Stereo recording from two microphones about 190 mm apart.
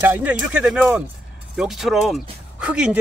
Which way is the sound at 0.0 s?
10° right (ahead or behind).